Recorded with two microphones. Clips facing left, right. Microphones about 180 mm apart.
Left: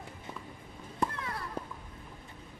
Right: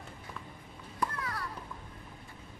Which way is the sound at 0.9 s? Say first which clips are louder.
Left 1 dB; 25° left (ahead or behind).